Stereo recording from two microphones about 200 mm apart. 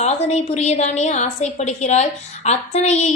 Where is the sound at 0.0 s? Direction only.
35° left (ahead or behind).